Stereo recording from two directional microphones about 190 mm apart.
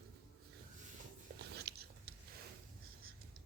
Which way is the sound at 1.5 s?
60° right (ahead or behind).